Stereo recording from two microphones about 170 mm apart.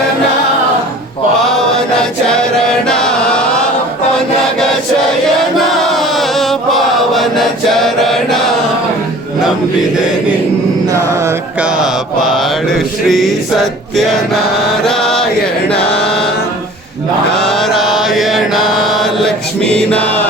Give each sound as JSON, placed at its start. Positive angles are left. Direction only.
{"t": 1.5, "sound": "chant", "side_deg": 5}
{"t": 5.9, "sound": "chant", "side_deg": 0}
{"t": 11.2, "sound": "mantra", "side_deg": -15}
{"t": 11.8, "sound": "mantra", "side_deg": 0}
{"t": 15.7, "sound": "chant", "side_deg": 0}
{"t": 17.4, "sound": "mantra", "side_deg": 0}